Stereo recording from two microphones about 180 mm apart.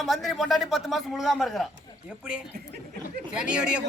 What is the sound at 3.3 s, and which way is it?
Speech, 5° right (ahead or behind).